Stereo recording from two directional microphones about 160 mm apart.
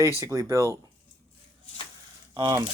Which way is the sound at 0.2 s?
20° right (ahead or behind).